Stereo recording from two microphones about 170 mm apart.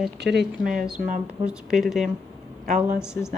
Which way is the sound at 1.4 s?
Centre (ahead or behind).